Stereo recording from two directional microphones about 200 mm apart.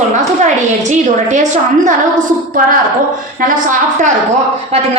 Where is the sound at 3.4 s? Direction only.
40° right (ahead or behind).